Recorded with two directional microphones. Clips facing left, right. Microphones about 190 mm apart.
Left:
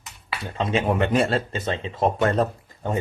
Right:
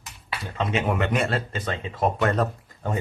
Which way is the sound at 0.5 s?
30° left (ahead or behind).